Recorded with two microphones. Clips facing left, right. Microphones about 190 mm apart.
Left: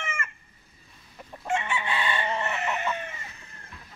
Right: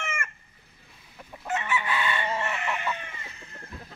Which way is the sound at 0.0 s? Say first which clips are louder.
Right 1 dB; 50° right (ahead or behind).